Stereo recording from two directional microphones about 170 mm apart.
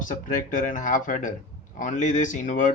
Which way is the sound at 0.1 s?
50° left (ahead or behind).